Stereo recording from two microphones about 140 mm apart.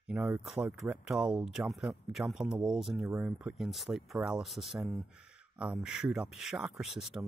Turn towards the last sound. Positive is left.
turn(degrees=0)  # may be behind; listen again after turning